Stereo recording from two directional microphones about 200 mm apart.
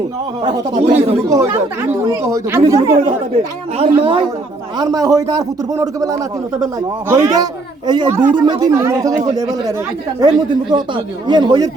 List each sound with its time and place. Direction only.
0.9 s a man's voice: 15° right (ahead or behind)
3.8 s speech: 30° right (ahead or behind)
4.8 s a man's voice: 20° right (ahead or behind)